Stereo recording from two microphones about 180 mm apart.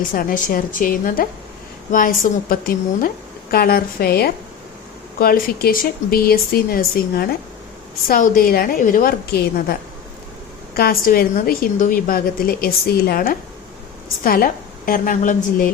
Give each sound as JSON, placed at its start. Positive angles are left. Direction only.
{"t": 0.1, "sound": "a woman's voice", "side_deg": 50}
{"t": 10.8, "sound": "a woman's voice", "side_deg": 55}